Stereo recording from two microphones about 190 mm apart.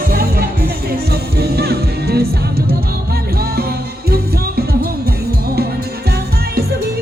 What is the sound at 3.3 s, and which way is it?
Music, 55° right (ahead or behind).